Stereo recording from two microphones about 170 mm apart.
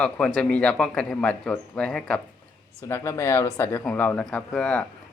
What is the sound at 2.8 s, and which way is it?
Speech, 15° left (ahead or behind).